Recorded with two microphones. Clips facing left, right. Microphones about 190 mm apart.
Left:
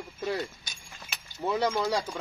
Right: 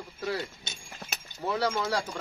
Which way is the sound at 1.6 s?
20° left (ahead or behind).